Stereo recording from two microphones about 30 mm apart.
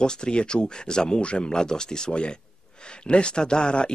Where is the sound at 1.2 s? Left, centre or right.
Left.